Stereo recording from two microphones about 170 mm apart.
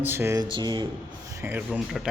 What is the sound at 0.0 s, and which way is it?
Speech, 15° right (ahead or behind).